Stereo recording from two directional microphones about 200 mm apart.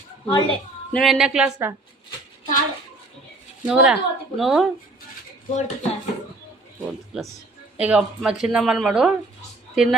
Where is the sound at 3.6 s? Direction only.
5° right (ahead or behind).